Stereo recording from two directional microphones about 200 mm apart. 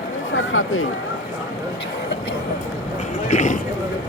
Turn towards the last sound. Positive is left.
turn(degrees=35)  # may be behind; listen again after turning